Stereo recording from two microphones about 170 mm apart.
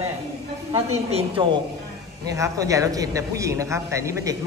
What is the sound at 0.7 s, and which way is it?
Speech, 35° right (ahead or behind).